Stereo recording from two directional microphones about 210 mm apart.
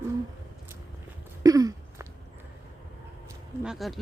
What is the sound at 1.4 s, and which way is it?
Throat clearing, 15° right (ahead or behind).